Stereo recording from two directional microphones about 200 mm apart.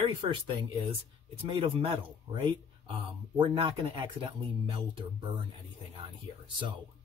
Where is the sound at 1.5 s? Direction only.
25° right (ahead or behind).